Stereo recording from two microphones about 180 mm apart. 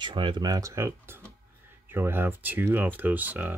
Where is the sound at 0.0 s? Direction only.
25° right (ahead or behind).